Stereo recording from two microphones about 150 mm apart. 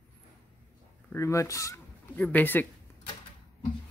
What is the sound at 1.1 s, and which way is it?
Speech, 20° left (ahead or behind).